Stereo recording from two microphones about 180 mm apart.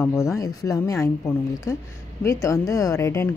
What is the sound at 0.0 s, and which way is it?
A woman's voice, 15° left (ahead or behind).